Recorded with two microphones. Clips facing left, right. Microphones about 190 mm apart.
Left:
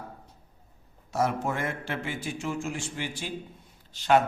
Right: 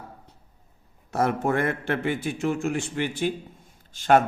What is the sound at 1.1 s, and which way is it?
A man's voice, 60° right (ahead or behind).